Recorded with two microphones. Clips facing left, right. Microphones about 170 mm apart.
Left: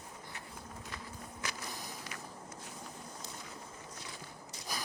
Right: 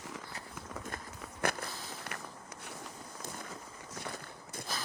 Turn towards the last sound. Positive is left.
turn(degrees=10)  # may be behind; listen again after turning